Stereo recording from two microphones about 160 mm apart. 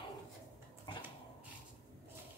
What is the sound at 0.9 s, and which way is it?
Dog, 30° left (ahead or behind).